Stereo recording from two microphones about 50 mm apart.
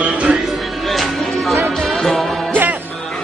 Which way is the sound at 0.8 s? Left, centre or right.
Centre.